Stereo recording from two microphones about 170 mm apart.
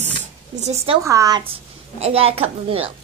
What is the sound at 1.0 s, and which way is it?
Speech, 20° right (ahead or behind).